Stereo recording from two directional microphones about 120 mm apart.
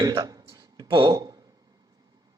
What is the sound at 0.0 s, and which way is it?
A man's voice, 35° right (ahead or behind).